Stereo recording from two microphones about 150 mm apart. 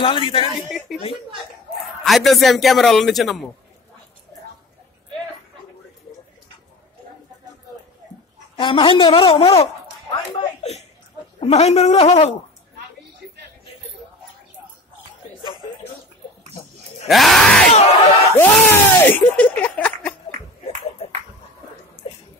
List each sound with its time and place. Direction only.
0.0 s a woman's voice: 35° left (ahead or behind)
0.9 s a man's voice: centre (ahead or behind)
8.5 s a woman's voice: 35° left (ahead or behind)
11.3 s a woman's voice: 45° left (ahead or behind)
17.1 s a man's voice: centre (ahead or behind)
17.7 s a woman's voice: 45° left (ahead or behind)
18.4 s battle cry: 15° left (ahead or behind)
19.8 s a sound: 10° left (ahead or behind)
22.0 s bathtub: 35° left (ahead or behind)